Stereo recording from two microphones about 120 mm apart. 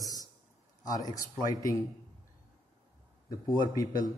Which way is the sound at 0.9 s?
30° left (ahead or behind).